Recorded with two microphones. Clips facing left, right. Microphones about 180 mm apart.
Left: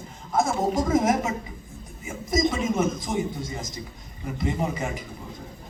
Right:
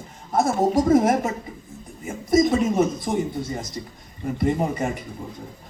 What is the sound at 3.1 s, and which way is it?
Speech, 50° right (ahead or behind).